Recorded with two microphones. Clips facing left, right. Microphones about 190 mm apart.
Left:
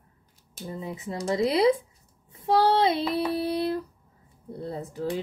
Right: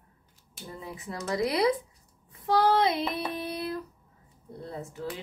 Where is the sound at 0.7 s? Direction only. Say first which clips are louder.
Left 5 dB; 25° left (ahead or behind).